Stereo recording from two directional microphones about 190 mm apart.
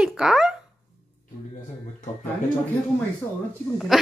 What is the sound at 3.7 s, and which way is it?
Speech, centre (ahead or behind).